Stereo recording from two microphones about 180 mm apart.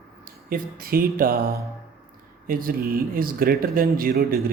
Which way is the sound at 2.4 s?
55° right (ahead or behind).